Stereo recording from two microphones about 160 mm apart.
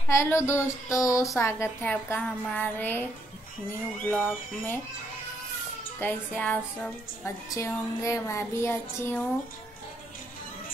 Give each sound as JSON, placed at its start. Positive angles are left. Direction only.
{"t": 0.1, "sound": "child singing", "side_deg": 15}
{"t": 4.0, "sound": "child singing", "side_deg": 15}
{"t": 5.9, "sound": "child singing", "side_deg": 10}